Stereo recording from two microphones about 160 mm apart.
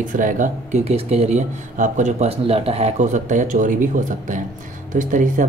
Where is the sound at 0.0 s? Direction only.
55° right (ahead or behind).